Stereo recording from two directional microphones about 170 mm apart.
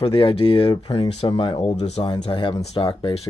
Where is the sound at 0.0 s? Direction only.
30° left (ahead or behind).